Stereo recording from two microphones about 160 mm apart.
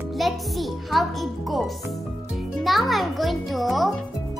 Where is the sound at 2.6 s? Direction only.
Centre (ahead or behind).